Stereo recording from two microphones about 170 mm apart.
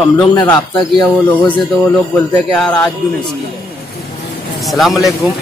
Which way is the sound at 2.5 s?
5° left (ahead or behind).